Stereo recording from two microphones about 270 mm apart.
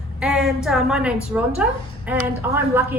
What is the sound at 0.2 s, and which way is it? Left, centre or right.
A woman's voice, centre.